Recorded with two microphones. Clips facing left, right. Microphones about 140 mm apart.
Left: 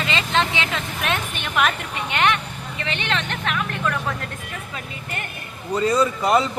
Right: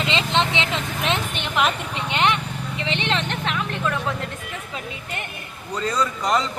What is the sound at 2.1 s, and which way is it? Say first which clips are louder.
Vehicle: even; 20° right (ahead or behind).